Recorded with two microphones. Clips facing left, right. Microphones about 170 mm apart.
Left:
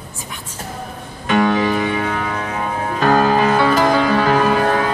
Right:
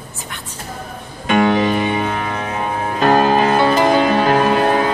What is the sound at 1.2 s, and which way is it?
Music, 20° right (ahead or behind).